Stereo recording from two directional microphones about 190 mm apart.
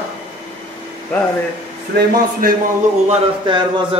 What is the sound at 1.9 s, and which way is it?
Speech, 50° right (ahead or behind).